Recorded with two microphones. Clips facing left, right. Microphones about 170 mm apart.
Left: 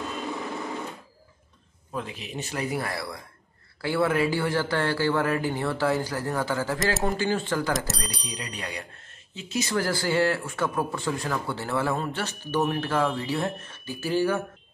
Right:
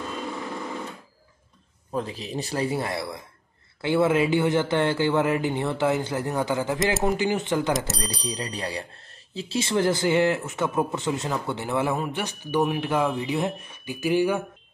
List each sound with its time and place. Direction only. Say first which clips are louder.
1.9 s speech: right 5 dB; 35° right (ahead or behind); by 7.7 s 20° right (ahead or behind)
7.7 s speech: right 2 dB; centre (ahead or behind)
8.2 s speech: right 5 dB; 40° right (ahead or behind); by 14.4 s 15° right (ahead or behind)